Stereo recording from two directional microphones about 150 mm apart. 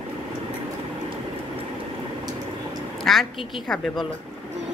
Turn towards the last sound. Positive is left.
turn(degrees=0)  # may be behind; listen again after turning